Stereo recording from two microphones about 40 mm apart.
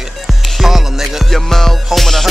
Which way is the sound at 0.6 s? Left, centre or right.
Centre.